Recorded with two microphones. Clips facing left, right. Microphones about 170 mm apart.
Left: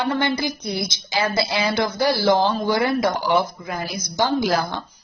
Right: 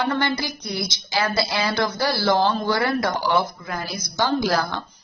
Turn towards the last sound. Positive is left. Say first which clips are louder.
# left 1 dB
turn(degrees=15)  # may be behind; listen again after turning